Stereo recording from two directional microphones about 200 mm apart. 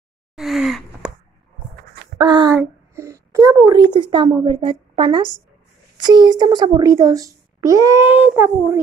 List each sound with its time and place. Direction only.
0.4 s gasp: centre (ahead or behind)
2.1 s a child's voice: 20° right (ahead or behind)